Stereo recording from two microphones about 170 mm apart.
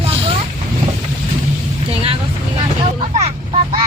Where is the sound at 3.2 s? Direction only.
35° right (ahead or behind).